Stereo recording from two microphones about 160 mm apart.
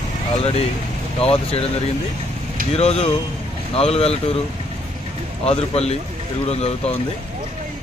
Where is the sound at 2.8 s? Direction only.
40° left (ahead or behind).